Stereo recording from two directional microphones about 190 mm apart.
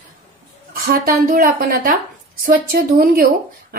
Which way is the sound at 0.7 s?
50° right (ahead or behind).